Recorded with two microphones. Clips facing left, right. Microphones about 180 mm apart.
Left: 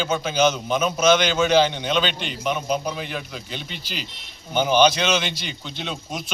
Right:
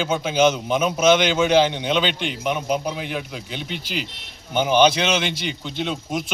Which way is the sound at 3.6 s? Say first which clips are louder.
Right 5 dB; 65° right (ahead or behind).